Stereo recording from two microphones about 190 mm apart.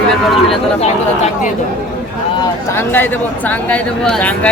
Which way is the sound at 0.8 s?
35° left (ahead or behind).